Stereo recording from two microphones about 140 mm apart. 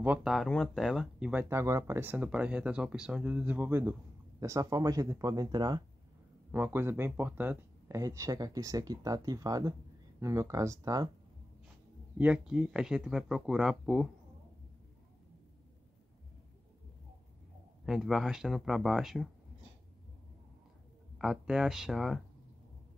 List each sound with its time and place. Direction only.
0.0 s speech: 10° right (ahead or behind); by 5.9 s 30° right (ahead or behind)
6.5 s speech: 15° right (ahead or behind)
12.2 s speech: 5° right (ahead or behind)
17.8 s speech: centre (ahead or behind)
21.2 s speech: 5° right (ahead or behind)